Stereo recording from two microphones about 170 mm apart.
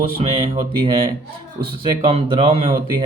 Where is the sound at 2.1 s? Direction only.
30° right (ahead or behind).